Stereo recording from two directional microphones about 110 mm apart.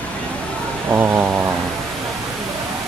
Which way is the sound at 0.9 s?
20° right (ahead or behind).